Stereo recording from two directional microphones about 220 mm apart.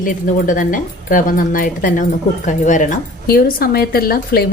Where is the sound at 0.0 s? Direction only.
40° left (ahead or behind).